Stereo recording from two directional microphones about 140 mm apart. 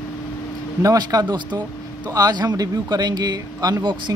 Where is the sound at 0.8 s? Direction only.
25° right (ahead or behind).